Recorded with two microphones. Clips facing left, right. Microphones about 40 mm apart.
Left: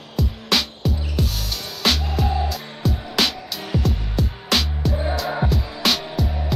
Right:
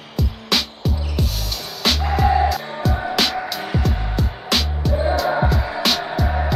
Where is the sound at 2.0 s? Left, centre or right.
Right.